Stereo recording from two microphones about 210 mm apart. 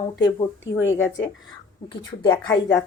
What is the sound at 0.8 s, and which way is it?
Speech, 65° left (ahead or behind).